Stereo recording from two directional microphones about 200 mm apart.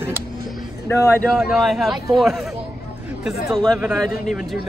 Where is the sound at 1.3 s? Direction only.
Centre (ahead or behind).